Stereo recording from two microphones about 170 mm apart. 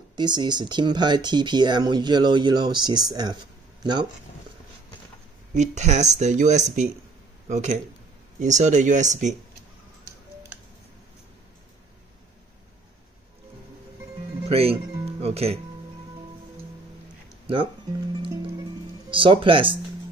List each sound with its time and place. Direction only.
0.1 s speech: 25° right (ahead or behind)
5.5 s speech: 45° right (ahead or behind)
14.4 s speech: 35° right (ahead or behind)
18.2 s music: 30° right (ahead or behind)